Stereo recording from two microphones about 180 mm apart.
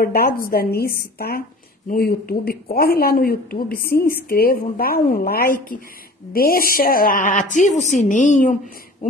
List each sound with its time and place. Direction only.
0.0 s speech: 55° left (ahead or behind)